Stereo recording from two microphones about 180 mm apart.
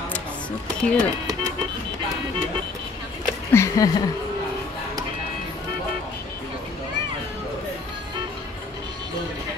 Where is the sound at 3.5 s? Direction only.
15° left (ahead or behind).